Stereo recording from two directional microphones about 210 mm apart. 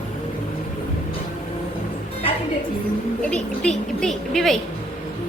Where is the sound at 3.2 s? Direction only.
5° left (ahead or behind).